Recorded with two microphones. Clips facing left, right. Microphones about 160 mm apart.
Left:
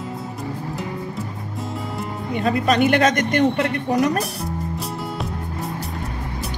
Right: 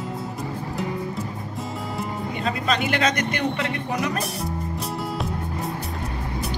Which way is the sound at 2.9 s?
50° left (ahead or behind).